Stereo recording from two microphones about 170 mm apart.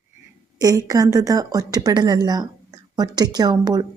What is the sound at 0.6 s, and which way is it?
A woman's voice, 20° right (ahead or behind).